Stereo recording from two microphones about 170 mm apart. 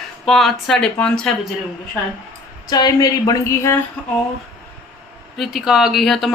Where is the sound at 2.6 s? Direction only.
25° left (ahead or behind).